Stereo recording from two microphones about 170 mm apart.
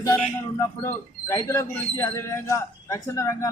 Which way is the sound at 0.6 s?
15° left (ahead or behind).